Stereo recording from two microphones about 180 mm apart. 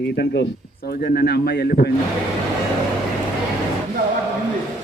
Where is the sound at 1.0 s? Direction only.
60° left (ahead or behind).